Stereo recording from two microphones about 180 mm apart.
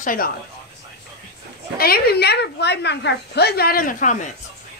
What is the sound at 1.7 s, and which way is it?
A man's voice, 60° left (ahead or behind).